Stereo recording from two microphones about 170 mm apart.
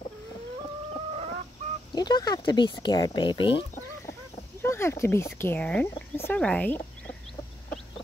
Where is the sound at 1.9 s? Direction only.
25° left (ahead or behind).